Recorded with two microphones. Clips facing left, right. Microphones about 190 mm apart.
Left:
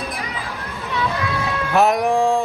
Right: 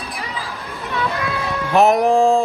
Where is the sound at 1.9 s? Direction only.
25° right (ahead or behind).